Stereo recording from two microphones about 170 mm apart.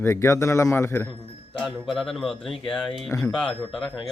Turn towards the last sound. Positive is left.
turn(degrees=5)  # may be behind; listen again after turning